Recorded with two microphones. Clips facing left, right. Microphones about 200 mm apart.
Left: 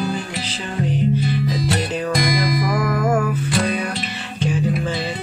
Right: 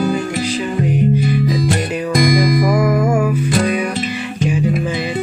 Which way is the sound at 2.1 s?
50° right (ahead or behind).